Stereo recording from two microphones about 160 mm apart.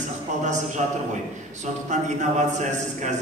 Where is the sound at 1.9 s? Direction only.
50° right (ahead or behind).